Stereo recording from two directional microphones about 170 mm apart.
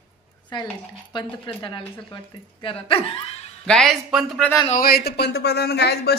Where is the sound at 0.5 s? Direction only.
25° left (ahead or behind).